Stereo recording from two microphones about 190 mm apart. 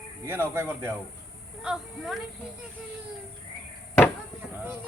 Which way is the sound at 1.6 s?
Centre (ahead or behind).